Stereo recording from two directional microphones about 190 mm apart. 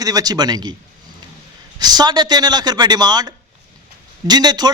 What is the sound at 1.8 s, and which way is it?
A man's voice, 20° right (ahead or behind).